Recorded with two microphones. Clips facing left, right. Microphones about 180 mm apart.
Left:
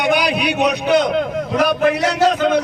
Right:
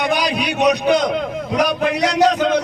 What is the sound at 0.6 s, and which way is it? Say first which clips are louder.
Speech: right 2 dB; 5° left (ahead or behind).